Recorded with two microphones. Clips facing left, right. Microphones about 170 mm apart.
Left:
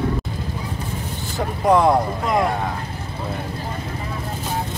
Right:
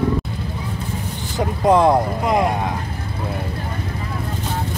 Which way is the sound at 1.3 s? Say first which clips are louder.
Right 2 dB; 20° right (ahead or behind).